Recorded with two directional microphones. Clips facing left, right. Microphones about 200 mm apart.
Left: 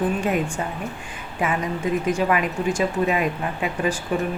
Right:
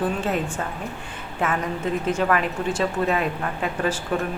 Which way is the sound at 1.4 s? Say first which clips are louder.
Left 1 dB; 10° left (ahead or behind).